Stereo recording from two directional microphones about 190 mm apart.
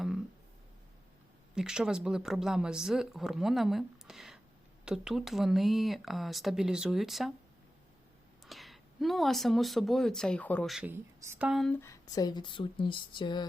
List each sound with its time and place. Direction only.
1.5 s speech: 5° right (ahead or behind)
8.4 s speech: centre (ahead or behind)
11.8 s speech: 20° left (ahead or behind)